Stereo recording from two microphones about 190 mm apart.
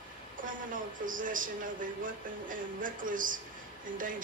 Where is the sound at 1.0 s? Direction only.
45° right (ahead or behind).